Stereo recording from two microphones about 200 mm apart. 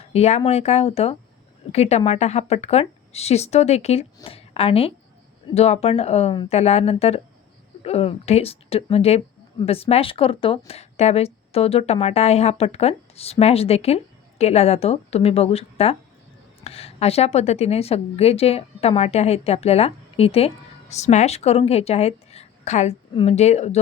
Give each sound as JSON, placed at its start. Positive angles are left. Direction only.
{"t": 0.0, "sound": "a woman's voice", "side_deg": 30}